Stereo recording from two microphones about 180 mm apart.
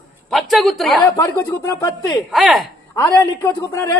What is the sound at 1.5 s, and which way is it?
Speech, 20° left (ahead or behind).